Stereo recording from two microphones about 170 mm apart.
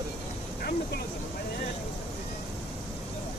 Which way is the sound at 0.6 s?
65° left (ahead or behind).